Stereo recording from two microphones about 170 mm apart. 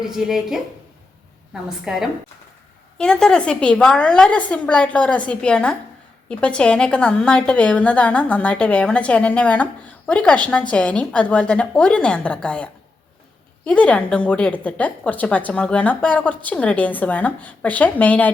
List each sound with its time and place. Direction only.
0.0 s a woman's voice: 5° right (ahead or behind)
1.6 s a woman's voice: 5° right (ahead or behind)
13.7 s a woman's voice: 5° left (ahead or behind)